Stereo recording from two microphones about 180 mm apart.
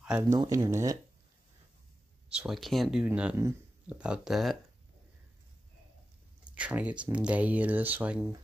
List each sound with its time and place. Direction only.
0.3 s speech: 20° right (ahead or behind)
2.2 s speech: 5° right (ahead or behind)
6.4 s speech: 5° right (ahead or behind)